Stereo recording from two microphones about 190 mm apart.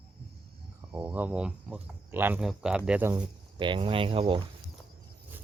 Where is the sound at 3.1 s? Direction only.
25° right (ahead or behind).